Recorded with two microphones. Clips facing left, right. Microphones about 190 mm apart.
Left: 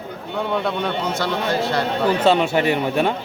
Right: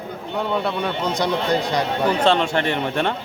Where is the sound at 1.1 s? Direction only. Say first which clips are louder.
Right 1 dB; 15° right (ahead or behind).